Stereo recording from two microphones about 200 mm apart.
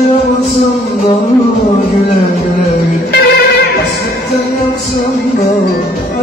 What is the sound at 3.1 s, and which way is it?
Music, 50° left (ahead or behind).